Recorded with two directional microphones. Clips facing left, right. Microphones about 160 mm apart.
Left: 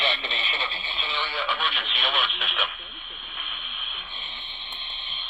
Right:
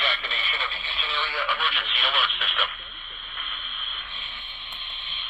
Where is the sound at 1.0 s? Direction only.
15° left (ahead or behind).